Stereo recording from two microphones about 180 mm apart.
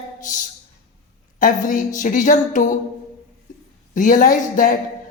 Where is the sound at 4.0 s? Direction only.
45° left (ahead or behind).